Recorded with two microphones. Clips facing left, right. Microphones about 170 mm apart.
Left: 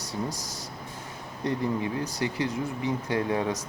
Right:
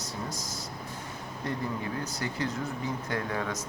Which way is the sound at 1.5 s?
15° left (ahead or behind).